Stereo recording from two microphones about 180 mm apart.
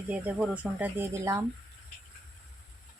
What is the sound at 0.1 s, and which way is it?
Speech, 5° right (ahead or behind).